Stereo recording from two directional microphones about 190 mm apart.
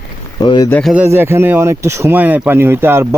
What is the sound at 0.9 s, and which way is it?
Speech, 10° right (ahead or behind).